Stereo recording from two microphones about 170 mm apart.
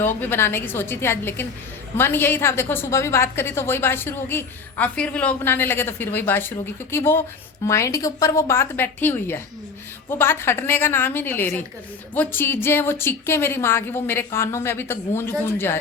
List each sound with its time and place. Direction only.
0.0 s a woman's voice: 10° left (ahead or behind)